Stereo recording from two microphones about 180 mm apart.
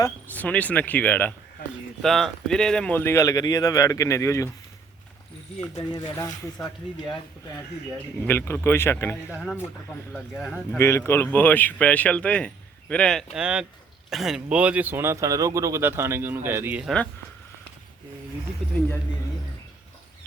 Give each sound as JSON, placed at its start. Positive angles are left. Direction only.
{"t": 0.0, "sound": "speech", "side_deg": 10}
{"t": 6.1, "sound": "speech", "side_deg": 20}
{"t": 8.2, "sound": "speech", "side_deg": 10}
{"t": 9.3, "sound": "speech", "side_deg": 0}
{"t": 10.8, "sound": "speech", "side_deg": 15}